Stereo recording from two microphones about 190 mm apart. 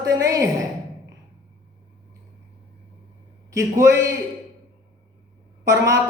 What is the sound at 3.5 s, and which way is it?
Speech, 15° right (ahead or behind).